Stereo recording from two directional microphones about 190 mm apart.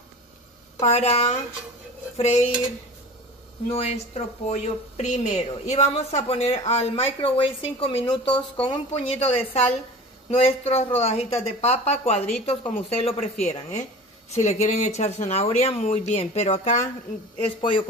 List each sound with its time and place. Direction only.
0.7 s speech: 35° left (ahead or behind)
2.1 s dishes: 35° left (ahead or behind)
3.6 s speech: 35° left (ahead or behind)
17.6 s a man's voice: 25° left (ahead or behind)